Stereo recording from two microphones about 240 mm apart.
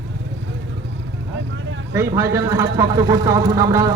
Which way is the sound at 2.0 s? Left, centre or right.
Centre.